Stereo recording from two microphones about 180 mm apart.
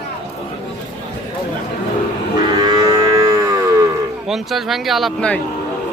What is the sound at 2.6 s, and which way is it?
Livestock, 20° right (ahead or behind).